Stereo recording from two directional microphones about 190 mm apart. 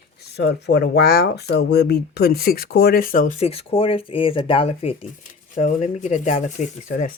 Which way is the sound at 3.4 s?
30° left (ahead or behind).